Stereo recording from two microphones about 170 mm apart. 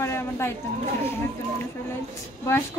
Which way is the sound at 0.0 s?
15° left (ahead or behind).